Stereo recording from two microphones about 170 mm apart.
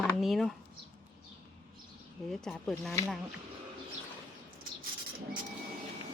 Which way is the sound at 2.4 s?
5° left (ahead or behind).